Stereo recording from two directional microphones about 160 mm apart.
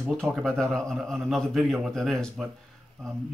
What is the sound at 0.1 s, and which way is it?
Speech, centre (ahead or behind).